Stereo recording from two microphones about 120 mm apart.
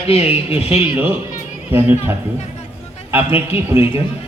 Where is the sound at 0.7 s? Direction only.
15° right (ahead or behind).